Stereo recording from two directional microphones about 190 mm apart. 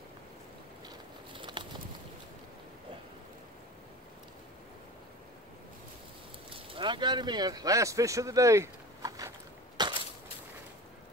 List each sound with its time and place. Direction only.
0.8 s biting: 25° right (ahead or behind)
6.5 s speech: 25° right (ahead or behind)
9.8 s crushing: 20° right (ahead or behind)